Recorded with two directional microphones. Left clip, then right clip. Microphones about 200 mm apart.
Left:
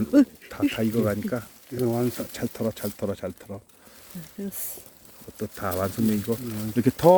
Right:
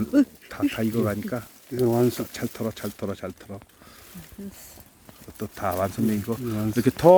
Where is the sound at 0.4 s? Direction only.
10° left (ahead or behind).